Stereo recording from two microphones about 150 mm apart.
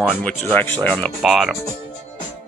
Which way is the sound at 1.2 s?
Centre (ahead or behind).